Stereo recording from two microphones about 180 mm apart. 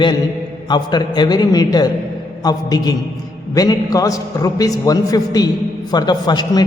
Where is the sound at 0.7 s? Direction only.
25° left (ahead or behind).